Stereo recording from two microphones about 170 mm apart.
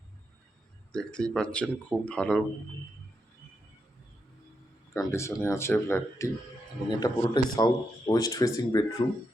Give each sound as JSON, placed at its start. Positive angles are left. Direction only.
{"t": 0.9, "sound": "speech", "side_deg": 5}
{"t": 4.9, "sound": "a man's voice", "side_deg": 15}